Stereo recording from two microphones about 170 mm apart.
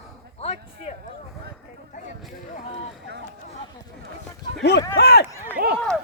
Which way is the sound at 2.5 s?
45° left (ahead or behind).